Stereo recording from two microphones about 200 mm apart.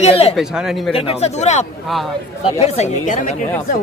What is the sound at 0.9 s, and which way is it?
Speech, 35° left (ahead or behind).